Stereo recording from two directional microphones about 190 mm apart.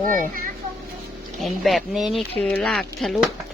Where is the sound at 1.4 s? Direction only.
Centre (ahead or behind).